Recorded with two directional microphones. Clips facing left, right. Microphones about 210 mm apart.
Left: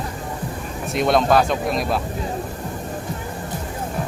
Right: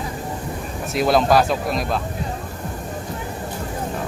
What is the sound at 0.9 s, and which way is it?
Speech, centre (ahead or behind).